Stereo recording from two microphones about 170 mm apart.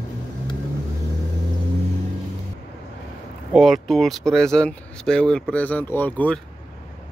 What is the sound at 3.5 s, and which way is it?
Speech, centre (ahead or behind).